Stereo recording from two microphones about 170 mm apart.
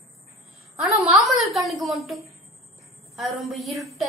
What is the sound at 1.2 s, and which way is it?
A woman's voice, centre (ahead or behind).